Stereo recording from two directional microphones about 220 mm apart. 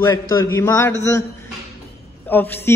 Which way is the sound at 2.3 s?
10° left (ahead or behind).